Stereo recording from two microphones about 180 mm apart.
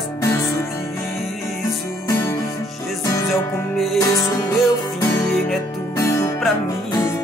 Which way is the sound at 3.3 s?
Centre (ahead or behind).